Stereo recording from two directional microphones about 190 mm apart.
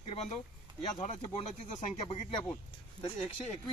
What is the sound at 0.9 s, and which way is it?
Speech, 35° left (ahead or behind).